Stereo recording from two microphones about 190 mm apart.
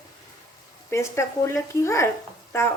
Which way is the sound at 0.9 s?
15° left (ahead or behind).